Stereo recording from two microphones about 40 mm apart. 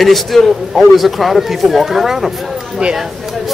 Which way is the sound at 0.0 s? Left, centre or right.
Centre.